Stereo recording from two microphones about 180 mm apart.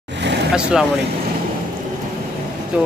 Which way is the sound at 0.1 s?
75° right (ahead or behind).